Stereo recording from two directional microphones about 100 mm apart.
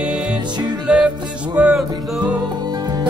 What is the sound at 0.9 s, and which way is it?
Music, 10° right (ahead or behind).